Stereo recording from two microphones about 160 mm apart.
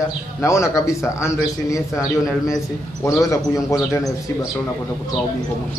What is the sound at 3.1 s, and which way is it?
Speech, 20° left (ahead or behind).